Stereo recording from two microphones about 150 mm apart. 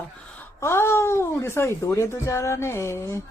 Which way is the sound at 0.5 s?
15° left (ahead or behind).